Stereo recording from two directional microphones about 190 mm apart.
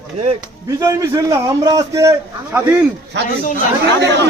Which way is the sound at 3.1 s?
65° right (ahead or behind).